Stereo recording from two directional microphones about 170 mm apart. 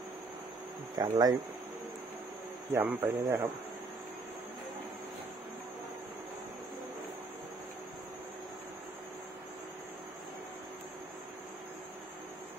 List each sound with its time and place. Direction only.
0.9 s speech: 25° right (ahead or behind)
2.7 s speech: 10° right (ahead or behind)